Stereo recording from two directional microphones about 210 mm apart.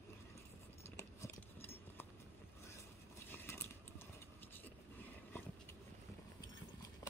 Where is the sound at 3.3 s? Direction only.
10° left (ahead or behind).